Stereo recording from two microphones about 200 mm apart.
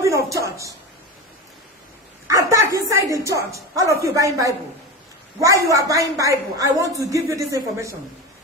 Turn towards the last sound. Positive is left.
turn(degrees=-15)  # may be behind; listen again after turning